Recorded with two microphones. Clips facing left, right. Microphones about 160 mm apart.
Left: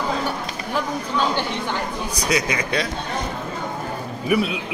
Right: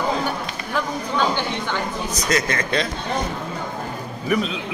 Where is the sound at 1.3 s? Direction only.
35° left (ahead or behind).